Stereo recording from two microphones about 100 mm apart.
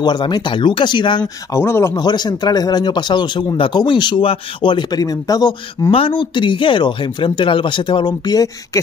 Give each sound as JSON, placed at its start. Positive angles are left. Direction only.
{"t": 0.0, "sound": "speech", "side_deg": 45}
{"t": 1.5, "sound": "speech", "side_deg": 25}
{"t": 2.0, "sound": "speech", "side_deg": 45}
{"t": 4.9, "sound": "speech", "side_deg": 40}
{"t": 5.9, "sound": "speech", "side_deg": 65}